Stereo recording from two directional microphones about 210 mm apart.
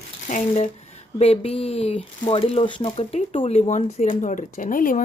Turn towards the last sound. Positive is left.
turn(degrees=40)  # may be behind; listen again after turning